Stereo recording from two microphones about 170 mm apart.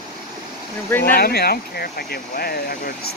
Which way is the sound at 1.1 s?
65° left (ahead or behind).